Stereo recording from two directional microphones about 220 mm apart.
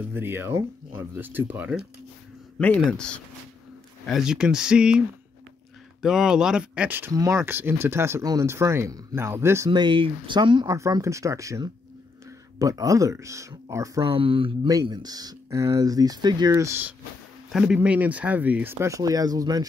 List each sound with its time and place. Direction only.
0.1 s speech: 10° right (ahead or behind)
2.6 s speech: 5° left (ahead or behind)
6.0 s speech: centre (ahead or behind)